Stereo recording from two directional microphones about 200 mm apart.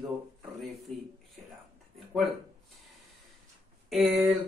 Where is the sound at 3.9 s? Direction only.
Centre (ahead or behind).